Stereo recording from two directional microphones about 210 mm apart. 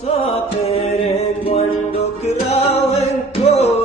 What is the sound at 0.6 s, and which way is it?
Music, 30° left (ahead or behind).